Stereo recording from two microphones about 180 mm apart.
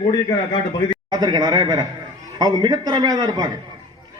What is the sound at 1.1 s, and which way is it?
A man's voice, 25° right (ahead or behind).